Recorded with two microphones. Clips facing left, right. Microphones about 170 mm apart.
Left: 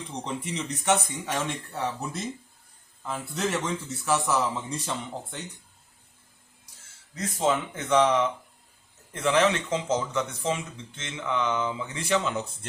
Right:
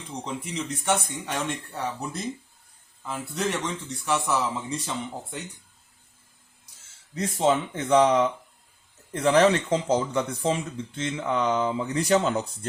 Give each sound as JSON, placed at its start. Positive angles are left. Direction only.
{"t": 0.3, "sound": "speech", "side_deg": 0}
{"t": 7.2, "sound": "speech", "side_deg": -30}